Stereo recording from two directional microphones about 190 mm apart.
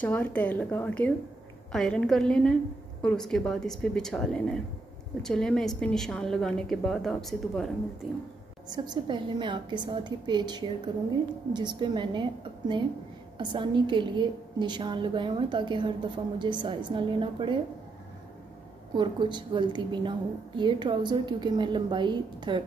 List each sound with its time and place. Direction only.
0.0 s a woman's voice: 10° left (ahead or behind)
8.6 s a woman's voice: 20° right (ahead or behind)
18.9 s a woman's voice: 25° right (ahead or behind)